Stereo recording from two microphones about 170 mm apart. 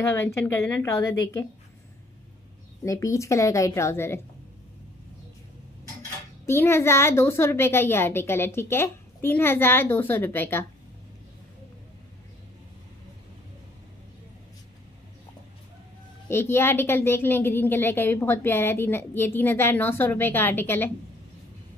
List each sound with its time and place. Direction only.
0.1 s a woman's voice: 15° left (ahead or behind)
2.8 s a woman's voice: 20° left (ahead or behind)
6.4 s a woman's voice: 15° left (ahead or behind)
16.3 s a woman's voice: 15° left (ahead or behind)